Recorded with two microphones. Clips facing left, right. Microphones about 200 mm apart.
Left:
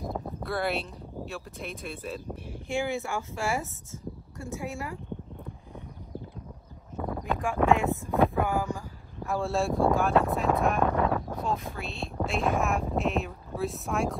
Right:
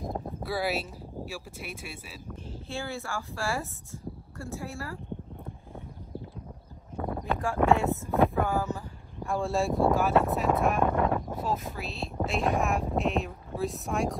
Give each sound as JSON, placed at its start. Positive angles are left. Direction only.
{"t": 0.4, "sound": "speech", "side_deg": -5}
{"t": 2.7, "sound": "speech", "side_deg": 15}
{"t": 7.0, "sound": "a sound", "side_deg": 0}
{"t": 7.6, "sound": "speech", "side_deg": 15}
{"t": 8.4, "sound": "a sound", "side_deg": 15}
{"t": 9.3, "sound": "speech", "side_deg": 0}